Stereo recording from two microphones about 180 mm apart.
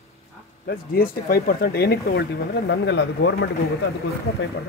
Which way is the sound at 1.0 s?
55° left (ahead or behind).